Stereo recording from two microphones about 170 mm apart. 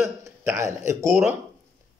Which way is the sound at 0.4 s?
15° right (ahead or behind).